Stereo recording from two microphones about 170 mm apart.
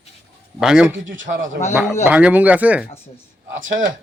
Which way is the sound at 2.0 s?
10° right (ahead or behind).